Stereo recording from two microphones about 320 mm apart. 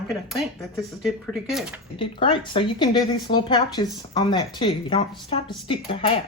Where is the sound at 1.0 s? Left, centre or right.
Centre.